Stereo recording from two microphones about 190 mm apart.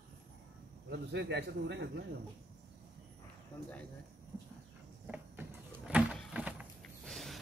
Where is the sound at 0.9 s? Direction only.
65° right (ahead or behind).